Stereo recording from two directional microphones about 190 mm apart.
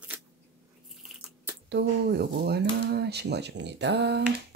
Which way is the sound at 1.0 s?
10° right (ahead or behind).